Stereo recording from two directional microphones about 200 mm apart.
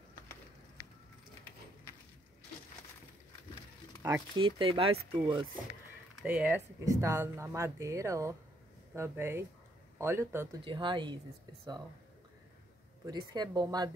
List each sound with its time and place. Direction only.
4.0 s speech: 20° right (ahead or behind)
6.2 s speech: 5° right (ahead or behind)
6.8 s speech: 15° right (ahead or behind)
10.6 s speech: 25° right (ahead or behind)
13.0 s speech: 20° right (ahead or behind)